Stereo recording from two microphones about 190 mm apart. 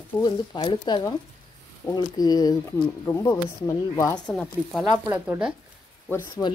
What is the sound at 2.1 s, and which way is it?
Speech, 20° left (ahead or behind).